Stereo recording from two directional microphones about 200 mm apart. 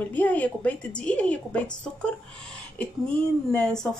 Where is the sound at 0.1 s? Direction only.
10° left (ahead or behind).